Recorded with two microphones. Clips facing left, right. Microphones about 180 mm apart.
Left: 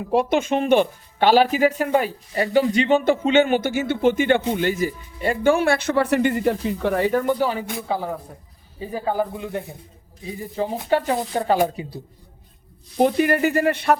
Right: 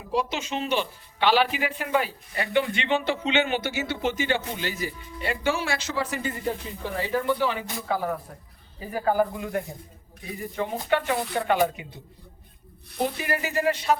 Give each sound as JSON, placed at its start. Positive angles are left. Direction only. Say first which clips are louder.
{"t": 0.1, "sound": "speech", "louder": "left 8 dB", "side_deg": 55}
{"t": 7.1, "sound": "speech", "louder": "left 4 dB", "side_deg": 45}
{"t": 7.9, "sound": "speech", "louder": "right 1 dB", "side_deg": 25}
{"t": 13.0, "sound": "speech", "louder": "left 10 dB", "side_deg": 60}